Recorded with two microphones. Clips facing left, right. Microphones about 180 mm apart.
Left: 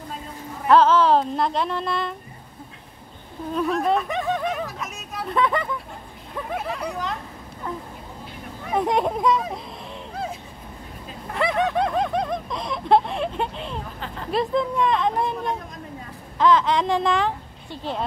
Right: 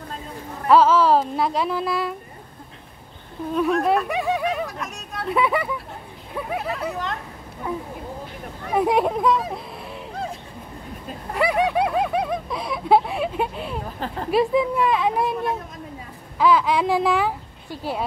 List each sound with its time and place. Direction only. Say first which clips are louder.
0.7 s speech: right 1 dB; 5° right (ahead or behind)
3.5 s speech: right 2 dB; centre (ahead or behind)
4.6 s speech: right 1 dB; centre (ahead or behind)
5.3 s speech: right 1 dB; 10° right (ahead or behind)
11.3 s a sound: right 2 dB; 10° right (ahead or behind)
14.3 s speech: right 3 dB; 5° right (ahead or behind)